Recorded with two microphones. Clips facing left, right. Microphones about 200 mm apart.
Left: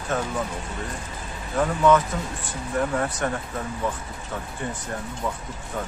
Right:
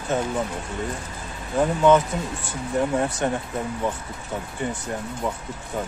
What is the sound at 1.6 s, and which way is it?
Speech, 25° right (ahead or behind).